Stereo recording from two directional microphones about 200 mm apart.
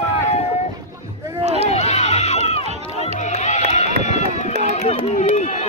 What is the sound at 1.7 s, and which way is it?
Run, 35° left (ahead or behind).